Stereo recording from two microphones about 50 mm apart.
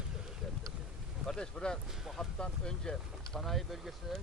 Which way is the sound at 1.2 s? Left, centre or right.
Centre.